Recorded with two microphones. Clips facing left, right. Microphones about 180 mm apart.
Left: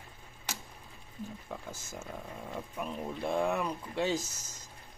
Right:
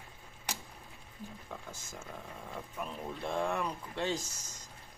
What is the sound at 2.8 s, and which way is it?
Speech, 10° left (ahead or behind).